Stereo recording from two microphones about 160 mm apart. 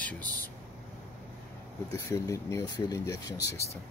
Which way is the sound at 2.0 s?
20° left (ahead or behind).